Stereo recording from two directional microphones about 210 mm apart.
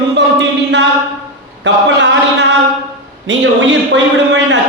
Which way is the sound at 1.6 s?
55° right (ahead or behind).